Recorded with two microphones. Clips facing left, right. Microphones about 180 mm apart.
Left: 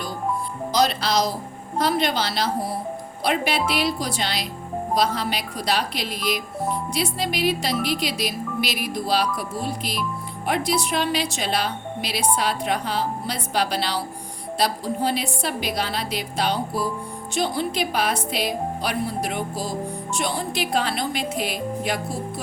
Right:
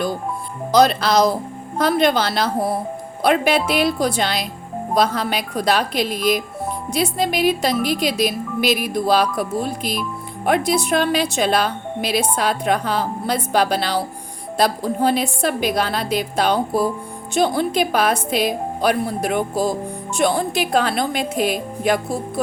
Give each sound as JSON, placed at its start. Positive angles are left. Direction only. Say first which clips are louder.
{"t": 0.7, "sound": "speech", "louder": "right 7 dB", "side_deg": -55}